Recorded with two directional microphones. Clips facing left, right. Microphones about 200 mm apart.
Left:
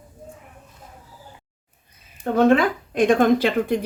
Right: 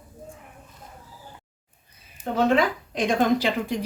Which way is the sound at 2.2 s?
55° left (ahead or behind).